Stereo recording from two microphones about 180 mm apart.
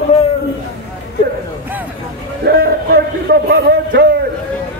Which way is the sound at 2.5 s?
60° right (ahead or behind).